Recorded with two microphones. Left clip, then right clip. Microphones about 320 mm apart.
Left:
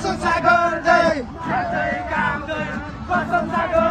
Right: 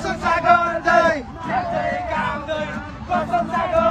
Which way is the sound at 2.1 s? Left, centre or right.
Right.